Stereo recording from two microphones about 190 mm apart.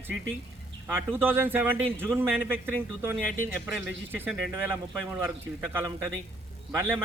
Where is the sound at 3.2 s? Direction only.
45° left (ahead or behind).